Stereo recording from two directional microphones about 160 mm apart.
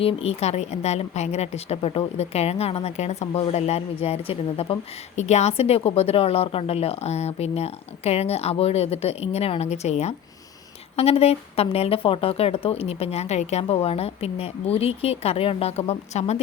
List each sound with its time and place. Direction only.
0.0 s a woman's voice: 40° left (ahead or behind)